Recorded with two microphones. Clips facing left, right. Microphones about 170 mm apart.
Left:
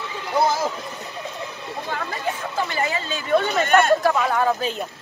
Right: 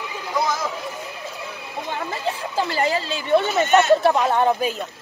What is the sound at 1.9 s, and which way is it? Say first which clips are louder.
Speech: right 1 dB; 25° right (ahead or behind).